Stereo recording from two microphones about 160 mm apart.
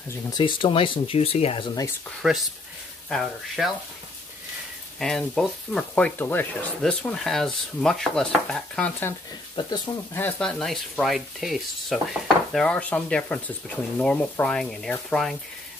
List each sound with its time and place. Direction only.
0.1 s speech: 30° left (ahead or behind)
2.0 s speech: centre (ahead or behind)
4.9 s speech: centre (ahead or behind)
9.6 s speech: 30° left (ahead or behind)
10.1 s speech: 10° left (ahead or behind)